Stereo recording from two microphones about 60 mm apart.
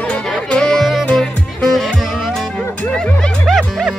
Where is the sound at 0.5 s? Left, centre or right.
Centre.